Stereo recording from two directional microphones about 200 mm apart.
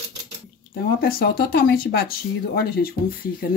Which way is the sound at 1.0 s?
50° left (ahead or behind).